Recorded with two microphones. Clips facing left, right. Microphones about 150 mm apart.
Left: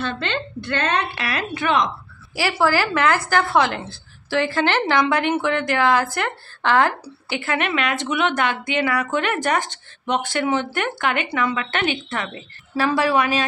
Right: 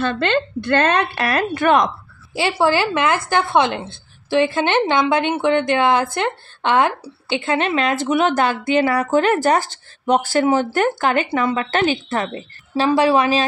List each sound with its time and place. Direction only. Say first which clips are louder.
0.0 s a woman's voice: right 7 dB; 55° right (ahead or behind)
2.3 s a woman's voice: right 2 dB; 25° right (ahead or behind)
12.7 s a woman's voice: right 4 dB; 25° right (ahead or behind)